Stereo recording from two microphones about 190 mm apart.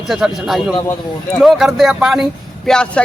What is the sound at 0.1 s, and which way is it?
A man's voice, centre (ahead or behind).